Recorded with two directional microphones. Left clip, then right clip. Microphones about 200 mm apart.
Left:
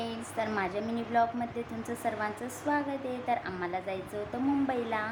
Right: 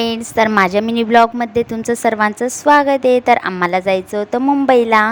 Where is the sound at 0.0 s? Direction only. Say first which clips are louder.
Right 19 dB; 50° right (ahead or behind).